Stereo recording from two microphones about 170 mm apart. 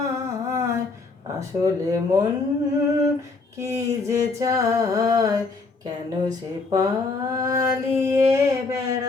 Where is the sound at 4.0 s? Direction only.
20° right (ahead or behind).